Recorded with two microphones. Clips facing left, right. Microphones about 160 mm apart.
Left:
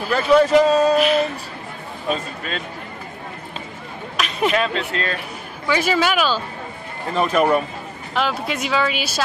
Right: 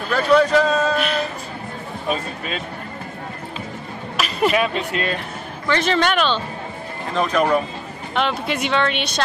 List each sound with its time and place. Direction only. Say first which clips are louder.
0.0 s speech: left 1 dB; 5° left (ahead or behind)
4.2 s a sound: right 1 dB; centre (ahead or behind)
4.7 s speech: right 1 dB; 15° right (ahead or behind)
5.7 s speech: even; 5° left (ahead or behind)